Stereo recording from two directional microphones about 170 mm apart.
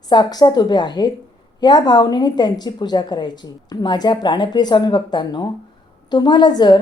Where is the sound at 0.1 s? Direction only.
25° left (ahead or behind).